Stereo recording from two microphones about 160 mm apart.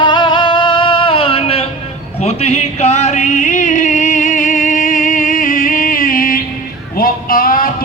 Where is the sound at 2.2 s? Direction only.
45° left (ahead or behind).